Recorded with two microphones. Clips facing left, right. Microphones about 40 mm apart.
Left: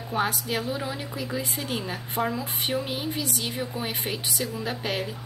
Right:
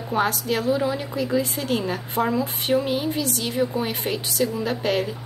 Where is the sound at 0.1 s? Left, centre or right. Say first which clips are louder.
Right 4 dB; centre.